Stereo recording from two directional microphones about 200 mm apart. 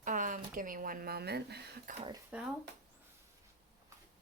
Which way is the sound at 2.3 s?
5° right (ahead or behind).